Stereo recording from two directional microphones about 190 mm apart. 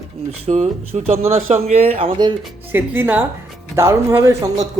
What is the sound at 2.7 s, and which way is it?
A woman's voice, 10° right (ahead or behind).